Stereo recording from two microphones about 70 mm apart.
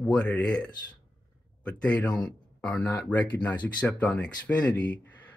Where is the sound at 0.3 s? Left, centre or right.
Left.